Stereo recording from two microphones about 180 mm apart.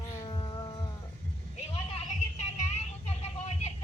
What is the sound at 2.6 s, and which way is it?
Music, 35° left (ahead or behind).